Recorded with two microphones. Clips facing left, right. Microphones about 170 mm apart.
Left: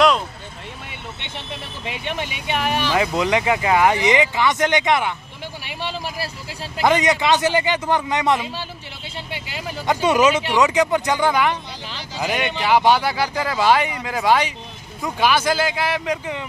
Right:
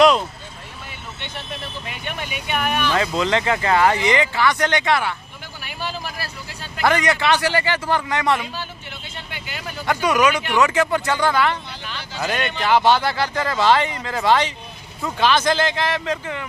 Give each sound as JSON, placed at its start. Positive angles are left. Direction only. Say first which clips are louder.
{"t": 1.9, "sound": "speech", "louder": "left 6 dB", "side_deg": 25}
{"t": 2.9, "sound": "speech", "louder": "left 1 dB", "side_deg": 15}
{"t": 6.8, "sound": "speech", "louder": "left 1 dB", "side_deg": 20}
{"t": 9.8, "sound": "speech", "louder": "left 2 dB", "side_deg": 25}